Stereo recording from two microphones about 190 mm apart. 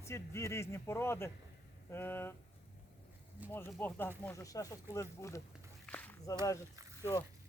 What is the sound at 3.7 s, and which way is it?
A man's voice, 10° left (ahead or behind).